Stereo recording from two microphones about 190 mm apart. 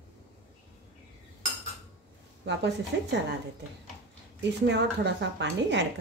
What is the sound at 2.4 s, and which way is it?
Speech, 65° right (ahead or behind).